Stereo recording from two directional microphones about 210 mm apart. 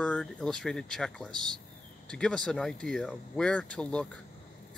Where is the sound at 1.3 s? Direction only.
20° right (ahead or behind).